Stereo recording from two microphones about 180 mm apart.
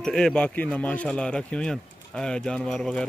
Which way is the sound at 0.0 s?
5° left (ahead or behind).